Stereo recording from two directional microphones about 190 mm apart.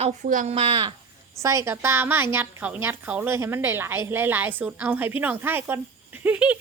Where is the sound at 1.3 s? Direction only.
15° right (ahead or behind).